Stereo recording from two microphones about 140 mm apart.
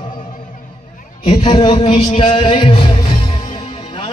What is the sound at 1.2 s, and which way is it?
Speech, 40° left (ahead or behind).